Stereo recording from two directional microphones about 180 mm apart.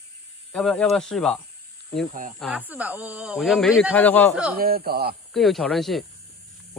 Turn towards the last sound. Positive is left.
turn(degrees=0)  # may be behind; listen again after turning